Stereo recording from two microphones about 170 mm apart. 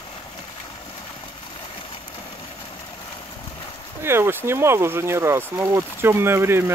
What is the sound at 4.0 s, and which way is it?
Speech, 15° right (ahead or behind).